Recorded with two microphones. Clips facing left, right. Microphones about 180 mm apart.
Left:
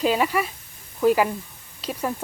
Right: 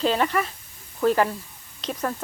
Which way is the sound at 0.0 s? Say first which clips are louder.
Left 1 dB; 10° left (ahead or behind).